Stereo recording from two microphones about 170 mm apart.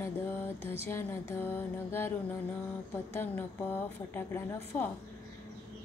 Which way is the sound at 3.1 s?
15° left (ahead or behind).